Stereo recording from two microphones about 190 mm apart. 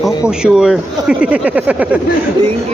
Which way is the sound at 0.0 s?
5° right (ahead or behind).